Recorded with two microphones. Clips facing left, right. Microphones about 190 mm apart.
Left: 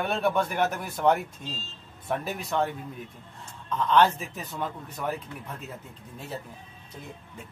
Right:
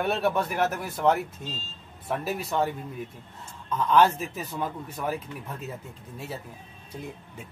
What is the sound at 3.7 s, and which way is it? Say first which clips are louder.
Speech: right 1 dB; 5° right (ahead or behind).